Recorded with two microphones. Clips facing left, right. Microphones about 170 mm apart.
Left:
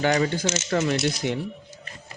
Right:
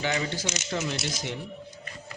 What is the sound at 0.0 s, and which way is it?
Speech, 55° left (ahead or behind).